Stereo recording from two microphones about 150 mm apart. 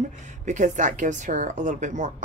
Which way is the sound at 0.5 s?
55° right (ahead or behind).